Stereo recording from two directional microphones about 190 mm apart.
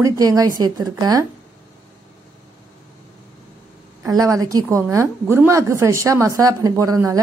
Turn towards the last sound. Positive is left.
turn(degrees=-15)  # may be behind; listen again after turning